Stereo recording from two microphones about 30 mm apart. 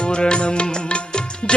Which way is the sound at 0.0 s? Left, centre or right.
Left.